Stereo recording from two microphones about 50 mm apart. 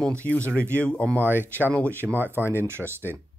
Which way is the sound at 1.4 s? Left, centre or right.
Left.